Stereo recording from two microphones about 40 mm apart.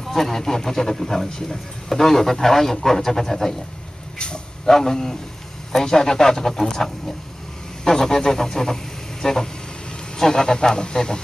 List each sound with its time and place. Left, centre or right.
0.0 s speech: centre
4.2 s vehicle: left
4.7 s speech: centre